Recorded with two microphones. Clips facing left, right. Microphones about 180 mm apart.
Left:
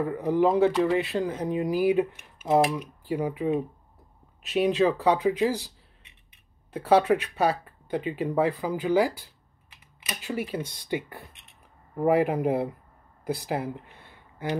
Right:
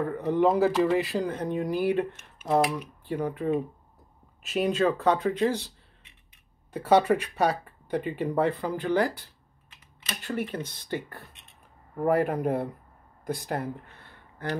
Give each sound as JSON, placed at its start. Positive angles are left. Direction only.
{"t": 0.0, "sound": "speech", "side_deg": 5}
{"t": 6.7, "sound": "speech", "side_deg": 0}
{"t": 13.9, "sound": "a sound", "side_deg": 15}